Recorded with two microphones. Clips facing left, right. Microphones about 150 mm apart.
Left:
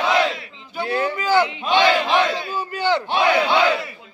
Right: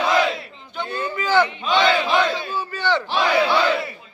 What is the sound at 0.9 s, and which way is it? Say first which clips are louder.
Speech: left 6 dB; 80° left.